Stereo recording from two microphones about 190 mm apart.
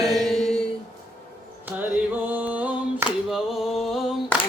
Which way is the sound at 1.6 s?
10° right (ahead or behind).